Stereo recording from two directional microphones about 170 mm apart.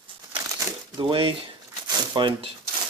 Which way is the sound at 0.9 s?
30° right (ahead or behind).